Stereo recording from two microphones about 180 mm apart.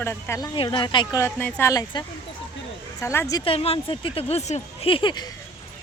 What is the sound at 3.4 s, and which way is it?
Speech, 30° left (ahead or behind).